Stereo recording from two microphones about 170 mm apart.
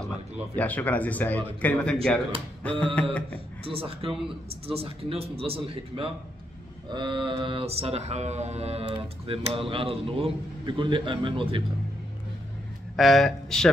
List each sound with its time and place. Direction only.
0.6 s a man's voice: 10° left (ahead or behind)
3.6 s speech: 35° right (ahead or behind)
12.9 s speech: centre (ahead or behind)